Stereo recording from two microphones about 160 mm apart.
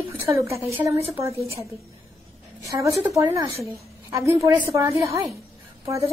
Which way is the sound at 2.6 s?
20° right (ahead or behind).